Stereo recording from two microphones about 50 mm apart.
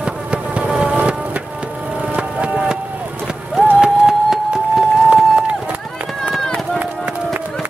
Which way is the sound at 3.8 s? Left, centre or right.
Centre.